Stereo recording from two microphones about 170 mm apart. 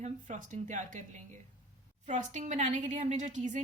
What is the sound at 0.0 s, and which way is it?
A woman's voice, 45° right (ahead or behind).